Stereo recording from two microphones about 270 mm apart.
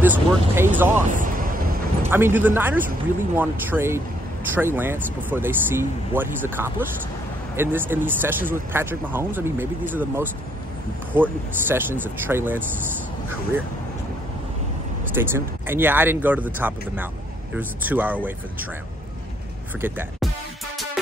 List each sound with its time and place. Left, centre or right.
0.0 s speech: centre
1.1 s a sound: right
2.0 s speech: centre
15.1 s speech: centre
19.8 s speech: centre